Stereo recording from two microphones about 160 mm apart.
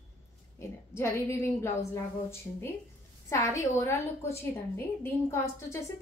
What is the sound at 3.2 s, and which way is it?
A woman's voice, 20° left (ahead or behind).